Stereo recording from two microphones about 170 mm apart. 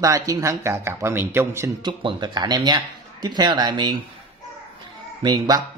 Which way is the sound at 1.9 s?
25° right (ahead or behind).